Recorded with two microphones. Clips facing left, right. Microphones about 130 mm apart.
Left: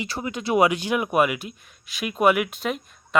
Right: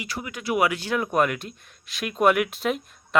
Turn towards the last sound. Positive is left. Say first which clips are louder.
# right 1 dB
turn(degrees=0)  # may be behind; listen again after turning